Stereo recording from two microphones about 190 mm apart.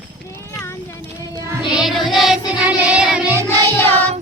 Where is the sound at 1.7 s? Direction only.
Centre (ahead or behind).